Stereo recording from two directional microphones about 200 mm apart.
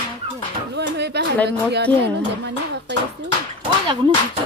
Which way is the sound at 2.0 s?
60° right (ahead or behind).